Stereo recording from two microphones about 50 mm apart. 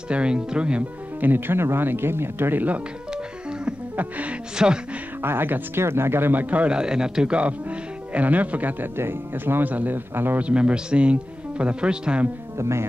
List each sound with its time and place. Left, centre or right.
0.1 s speech: centre
1.2 s speech: right
3.9 s speech: right
4.6 s speech: centre
5.2 s speech: right
6.4 s speech: right
10.4 s speech: right
12.5 s speech: right